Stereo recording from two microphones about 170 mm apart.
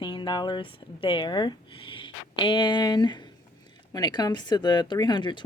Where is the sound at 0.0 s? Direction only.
30° left (ahead or behind).